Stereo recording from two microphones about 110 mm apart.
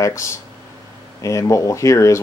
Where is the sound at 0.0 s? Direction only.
25° left (ahead or behind).